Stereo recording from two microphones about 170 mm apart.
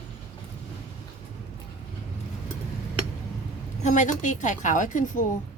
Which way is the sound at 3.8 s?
45° left (ahead or behind).